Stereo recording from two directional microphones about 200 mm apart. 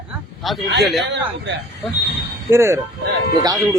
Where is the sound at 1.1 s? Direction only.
60° right (ahead or behind).